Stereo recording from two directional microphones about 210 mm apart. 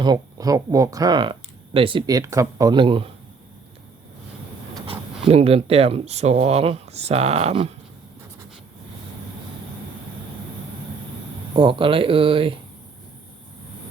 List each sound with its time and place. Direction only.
0.0 s speech: 20° right (ahead or behind)
4.9 s speech: 30° right (ahead or behind)
11.5 s speech: 25° right (ahead or behind)